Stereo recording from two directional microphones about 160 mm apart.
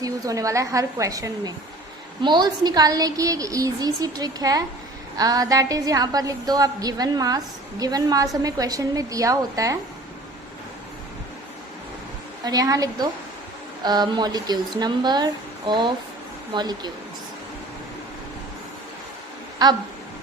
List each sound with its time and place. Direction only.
0.0 s a woman's voice: 20° right (ahead or behind)
12.5 s a woman's voice: 20° right (ahead or behind)
19.6 s a woman's voice: 25° right (ahead or behind)